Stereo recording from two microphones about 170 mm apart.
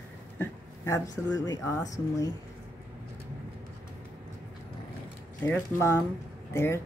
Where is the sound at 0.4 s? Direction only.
15° left (ahead or behind).